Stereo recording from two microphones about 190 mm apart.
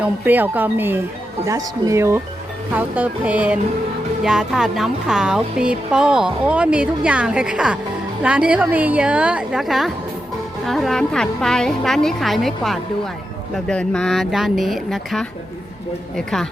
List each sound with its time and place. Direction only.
0.0 s speech: 10° right (ahead or behind)